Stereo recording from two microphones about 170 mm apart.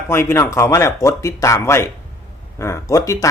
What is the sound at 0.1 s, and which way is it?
Speech, 15° left (ahead or behind).